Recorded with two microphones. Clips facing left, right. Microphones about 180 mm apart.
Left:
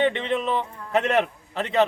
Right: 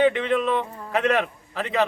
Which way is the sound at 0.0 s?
Centre (ahead or behind).